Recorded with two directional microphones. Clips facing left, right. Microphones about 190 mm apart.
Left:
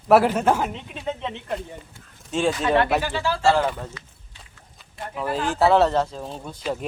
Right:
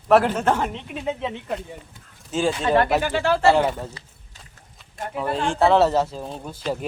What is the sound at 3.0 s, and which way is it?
Speech, 55° right (ahead or behind).